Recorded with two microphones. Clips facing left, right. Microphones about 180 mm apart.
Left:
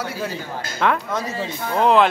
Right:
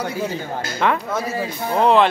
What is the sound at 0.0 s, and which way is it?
Speech, 15° right (ahead or behind).